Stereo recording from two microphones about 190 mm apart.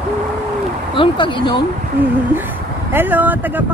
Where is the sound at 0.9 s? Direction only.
25° left (ahead or behind).